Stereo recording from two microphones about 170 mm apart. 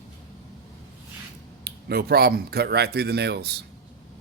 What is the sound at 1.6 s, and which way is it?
Speech, 70° right (ahead or behind).